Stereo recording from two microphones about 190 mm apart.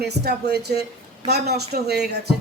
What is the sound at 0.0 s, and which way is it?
A woman's voice, 60° right (ahead or behind).